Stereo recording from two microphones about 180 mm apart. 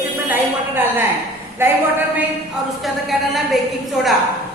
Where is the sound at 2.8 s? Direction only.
Centre (ahead or behind).